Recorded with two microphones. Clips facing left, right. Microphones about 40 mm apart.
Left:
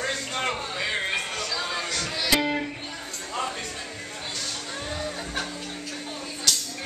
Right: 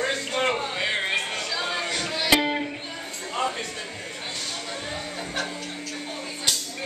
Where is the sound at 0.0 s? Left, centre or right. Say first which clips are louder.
Right 3 dB; centre.